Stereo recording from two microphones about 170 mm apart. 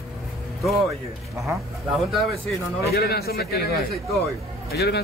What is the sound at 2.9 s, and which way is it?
A man's voice, 65° left (ahead or behind).